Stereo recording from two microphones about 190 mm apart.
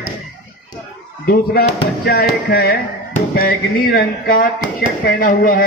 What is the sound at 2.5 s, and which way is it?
Speech, 65° left (ahead or behind).